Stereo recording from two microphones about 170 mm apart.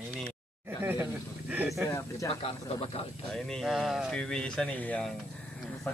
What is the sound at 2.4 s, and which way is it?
Speech, 35° left (ahead or behind).